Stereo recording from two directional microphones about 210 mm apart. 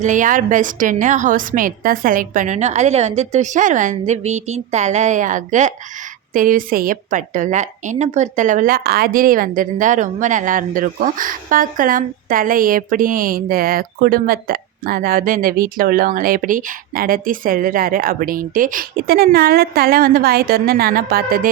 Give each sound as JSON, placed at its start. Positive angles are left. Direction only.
{"t": 0.0, "sound": "a woman's voice", "side_deg": -35}